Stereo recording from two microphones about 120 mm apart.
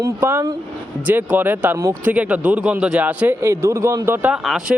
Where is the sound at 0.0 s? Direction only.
20° right (ahead or behind).